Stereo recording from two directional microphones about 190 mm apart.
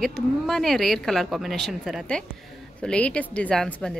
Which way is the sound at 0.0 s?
Centre (ahead or behind).